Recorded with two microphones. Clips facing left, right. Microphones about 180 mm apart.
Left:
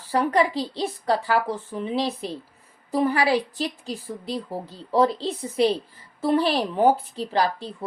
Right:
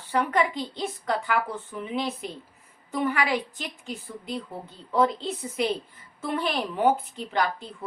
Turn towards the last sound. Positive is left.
turn(degrees=35)  # may be behind; listen again after turning